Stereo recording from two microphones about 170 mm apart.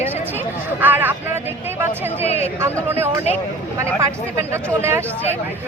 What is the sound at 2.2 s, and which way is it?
Speech, 40° left (ahead or behind).